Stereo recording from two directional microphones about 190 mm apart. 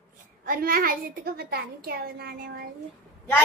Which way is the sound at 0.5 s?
50° right (ahead or behind).